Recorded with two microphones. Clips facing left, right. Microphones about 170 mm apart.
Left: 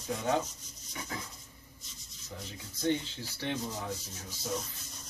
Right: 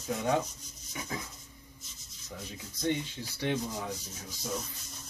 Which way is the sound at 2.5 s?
15° right (ahead or behind).